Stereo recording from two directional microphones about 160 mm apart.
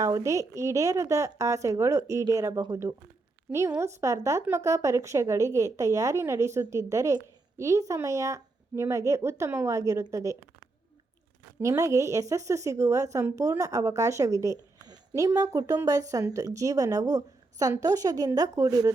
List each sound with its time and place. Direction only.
0.0 s a woman's voice: 20° right (ahead or behind)
11.6 s a woman's voice: 20° right (ahead or behind)